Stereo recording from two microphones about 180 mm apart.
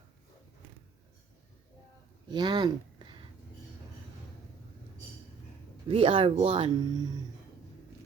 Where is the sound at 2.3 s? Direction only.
25° right (ahead or behind).